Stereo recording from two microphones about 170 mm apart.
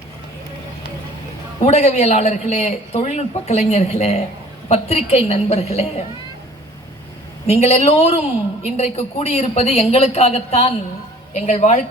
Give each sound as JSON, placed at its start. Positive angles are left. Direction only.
{"t": 1.6, "sound": "a man's voice", "side_deg": 40}
{"t": 7.4, "sound": "a man's voice", "side_deg": 40}